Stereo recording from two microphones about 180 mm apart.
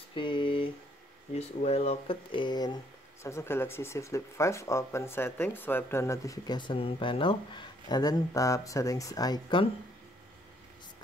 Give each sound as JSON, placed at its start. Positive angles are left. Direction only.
{"t": 0.1, "sound": "speech", "side_deg": 25}